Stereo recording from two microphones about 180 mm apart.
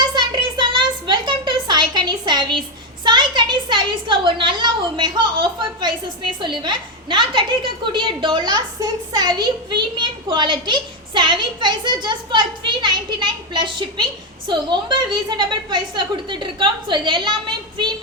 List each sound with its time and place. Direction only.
0.0 s a child's voice: 25° right (ahead or behind)